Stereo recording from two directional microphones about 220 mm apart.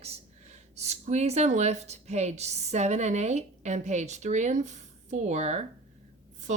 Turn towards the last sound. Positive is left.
turn(degrees=-30)  # may be behind; listen again after turning